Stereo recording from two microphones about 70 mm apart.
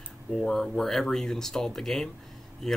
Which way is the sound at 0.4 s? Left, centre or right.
Centre.